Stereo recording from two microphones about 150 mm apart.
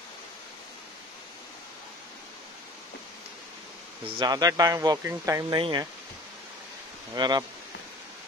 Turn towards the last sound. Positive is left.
turn(degrees=-30)  # may be behind; listen again after turning